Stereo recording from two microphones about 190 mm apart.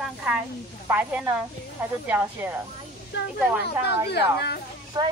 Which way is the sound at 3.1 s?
65° left (ahead or behind).